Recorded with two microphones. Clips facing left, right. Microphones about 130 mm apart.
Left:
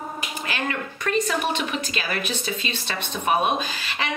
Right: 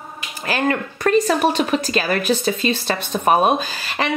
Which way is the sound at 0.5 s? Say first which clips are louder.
Right 9 dB; 40° right (ahead or behind).